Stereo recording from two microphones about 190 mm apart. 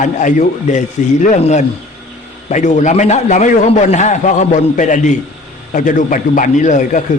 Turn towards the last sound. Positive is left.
turn(degrees=40)  # may be behind; listen again after turning